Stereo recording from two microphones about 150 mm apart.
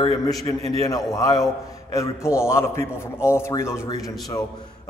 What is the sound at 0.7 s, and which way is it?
A man's voice, 25° left (ahead or behind).